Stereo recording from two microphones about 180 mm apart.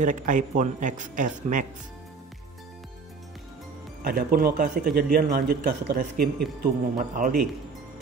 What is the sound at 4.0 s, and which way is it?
A man's voice, 55° right (ahead or behind).